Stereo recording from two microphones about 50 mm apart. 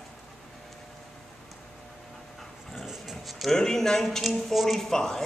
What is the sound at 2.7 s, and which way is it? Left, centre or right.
Dog, centre.